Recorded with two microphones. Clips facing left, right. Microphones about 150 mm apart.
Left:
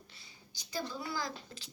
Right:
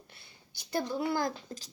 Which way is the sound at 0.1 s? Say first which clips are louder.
Right 1 dB; 60° right (ahead or behind).